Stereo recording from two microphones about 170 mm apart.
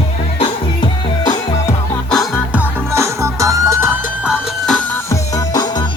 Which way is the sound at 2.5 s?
15° right (ahead or behind).